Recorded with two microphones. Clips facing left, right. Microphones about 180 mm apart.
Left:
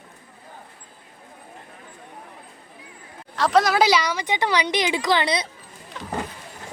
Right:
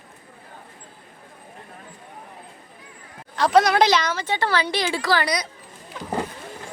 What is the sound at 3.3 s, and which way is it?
Speech, centre (ahead or behind).